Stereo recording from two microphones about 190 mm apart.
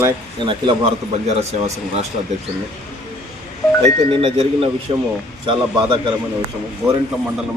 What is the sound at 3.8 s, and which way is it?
A man's voice, 30° right (ahead or behind).